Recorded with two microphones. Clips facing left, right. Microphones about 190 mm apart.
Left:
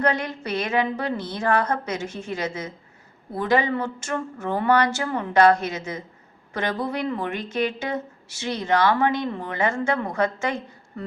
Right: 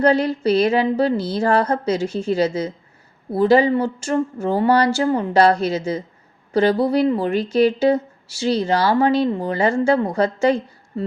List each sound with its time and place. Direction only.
0.0 s speech: 30° right (ahead or behind)